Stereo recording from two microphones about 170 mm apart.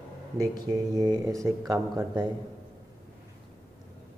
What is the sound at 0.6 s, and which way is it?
Speech, 25° right (ahead or behind).